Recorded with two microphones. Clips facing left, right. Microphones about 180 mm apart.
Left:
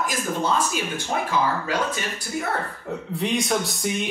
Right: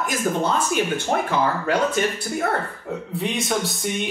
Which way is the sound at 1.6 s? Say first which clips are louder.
Right 5 dB; 60° right (ahead or behind).